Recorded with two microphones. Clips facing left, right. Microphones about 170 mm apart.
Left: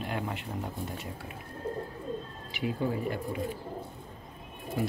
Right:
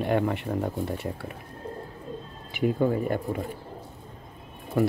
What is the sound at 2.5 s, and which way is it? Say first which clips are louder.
Speech: right 7 dB; 55° right (ahead or behind).